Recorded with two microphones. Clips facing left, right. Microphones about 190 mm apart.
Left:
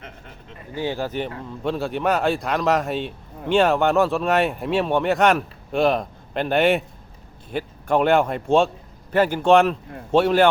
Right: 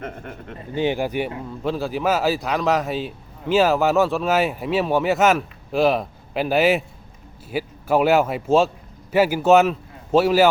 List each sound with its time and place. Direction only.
0.0 s speech: 55° right (ahead or behind)
0.7 s speech: 20° right (ahead or behind)
1.6 s a man's voice: centre (ahead or behind)